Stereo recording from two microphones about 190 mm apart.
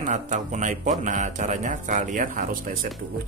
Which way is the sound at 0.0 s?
40° right (ahead or behind).